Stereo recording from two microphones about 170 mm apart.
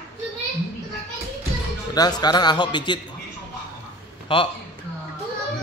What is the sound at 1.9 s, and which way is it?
A man's voice, 25° left (ahead or behind).